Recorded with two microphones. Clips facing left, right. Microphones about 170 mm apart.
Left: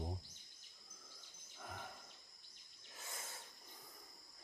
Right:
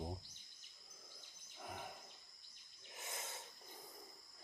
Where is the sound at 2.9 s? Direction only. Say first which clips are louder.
Right 3 dB; 20° right (ahead or behind).